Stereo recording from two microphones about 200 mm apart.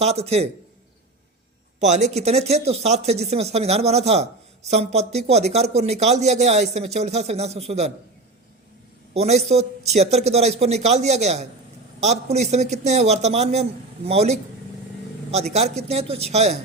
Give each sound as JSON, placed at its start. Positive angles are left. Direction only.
{"t": 0.0, "sound": "speech", "side_deg": -30}
{"t": 1.8, "sound": "speech", "side_deg": -35}
{"t": 9.1, "sound": "speech", "side_deg": -30}